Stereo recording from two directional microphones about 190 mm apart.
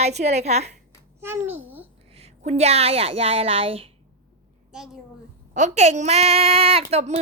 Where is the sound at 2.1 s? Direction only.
35° right (ahead or behind).